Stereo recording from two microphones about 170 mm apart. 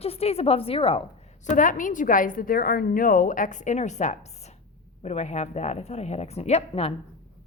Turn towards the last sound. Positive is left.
turn(degrees=35)  # may be behind; listen again after turning